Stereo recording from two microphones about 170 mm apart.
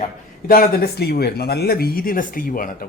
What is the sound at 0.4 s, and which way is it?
Speech, 60° left (ahead or behind).